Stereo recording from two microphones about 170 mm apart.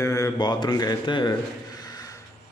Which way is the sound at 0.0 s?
20° left (ahead or behind).